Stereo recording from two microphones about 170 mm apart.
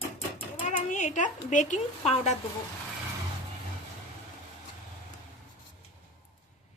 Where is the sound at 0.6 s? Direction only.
50° left (ahead or behind).